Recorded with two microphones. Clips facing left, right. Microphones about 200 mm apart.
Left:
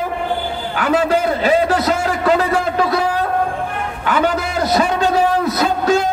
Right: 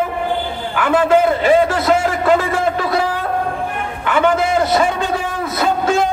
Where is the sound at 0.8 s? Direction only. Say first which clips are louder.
Right 3 dB; 40° left (ahead or behind).